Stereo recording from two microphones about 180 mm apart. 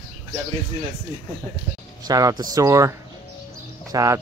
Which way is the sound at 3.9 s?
20° right (ahead or behind).